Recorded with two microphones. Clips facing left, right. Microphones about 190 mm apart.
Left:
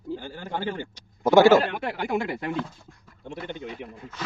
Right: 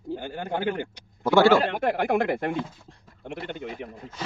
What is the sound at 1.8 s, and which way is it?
Speech, 50° right (ahead or behind).